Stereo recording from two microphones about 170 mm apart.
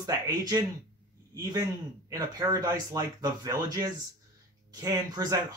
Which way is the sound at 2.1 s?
20° right (ahead or behind).